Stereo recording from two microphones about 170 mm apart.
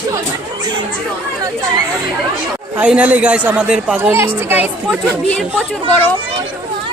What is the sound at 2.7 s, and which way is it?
Speech, 10° right (ahead or behind).